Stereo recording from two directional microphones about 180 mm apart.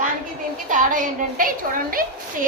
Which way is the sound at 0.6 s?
45° right (ahead or behind).